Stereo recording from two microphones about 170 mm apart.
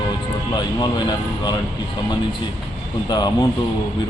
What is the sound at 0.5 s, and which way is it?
Speech, 25° left (ahead or behind).